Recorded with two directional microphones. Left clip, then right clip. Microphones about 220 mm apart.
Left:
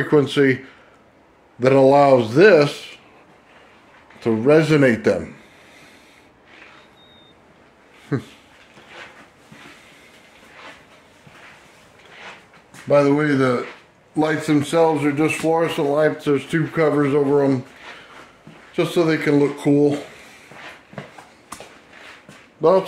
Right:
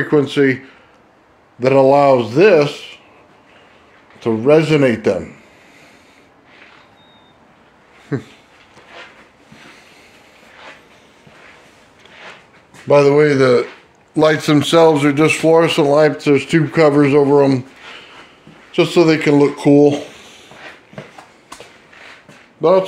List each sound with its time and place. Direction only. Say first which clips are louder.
0.0 s speech: right 2 dB; centre (ahead or behind)
4.2 s speech: right 3 dB; 5° right (ahead or behind)
8.1 s speech: right 2 dB; centre (ahead or behind)
12.8 s a man's voice: right 6 dB; 35° right (ahead or behind)
18.7 s speech: right 6 dB; 35° right (ahead or behind)
22.6 s speech: right 3 dB; 15° right (ahead or behind)